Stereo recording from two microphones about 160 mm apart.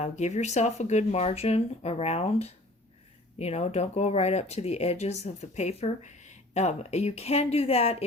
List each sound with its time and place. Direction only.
0.0 s speech: 45° left (ahead or behind)